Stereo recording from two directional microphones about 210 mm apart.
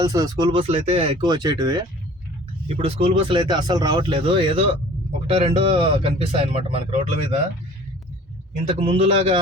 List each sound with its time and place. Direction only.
0.0 s speech: 15° right (ahead or behind)
8.8 s speech: 30° right (ahead or behind)